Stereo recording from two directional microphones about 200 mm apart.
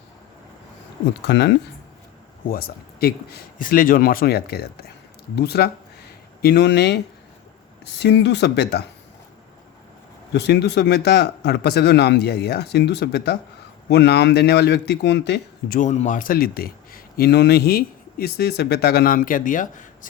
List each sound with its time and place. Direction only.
1.2 s a man's voice: 60° left (ahead or behind)
2.5 s a man's voice: 50° left (ahead or behind)
10.3 s a man's voice: 55° left (ahead or behind)
15.8 s a man's voice: 35° left (ahead or behind)